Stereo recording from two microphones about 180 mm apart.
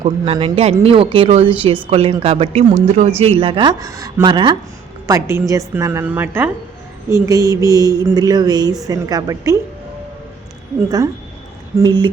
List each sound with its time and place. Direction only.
0.0 s a woman's voice: 30° right (ahead or behind)
11.8 s speech: 25° right (ahead or behind)